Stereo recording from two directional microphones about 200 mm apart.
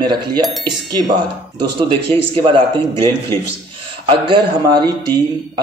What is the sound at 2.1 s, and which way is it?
Speech, 25° right (ahead or behind).